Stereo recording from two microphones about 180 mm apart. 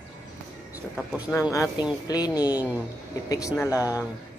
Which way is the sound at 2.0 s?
20° left (ahead or behind).